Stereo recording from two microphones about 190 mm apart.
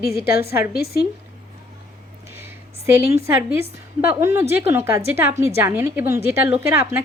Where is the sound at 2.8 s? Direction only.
15° right (ahead or behind).